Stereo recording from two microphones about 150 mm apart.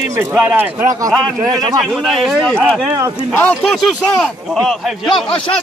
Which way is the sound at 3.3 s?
10° left (ahead or behind).